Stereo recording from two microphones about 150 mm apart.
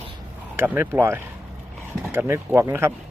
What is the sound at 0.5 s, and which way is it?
Speech, 15° right (ahead or behind).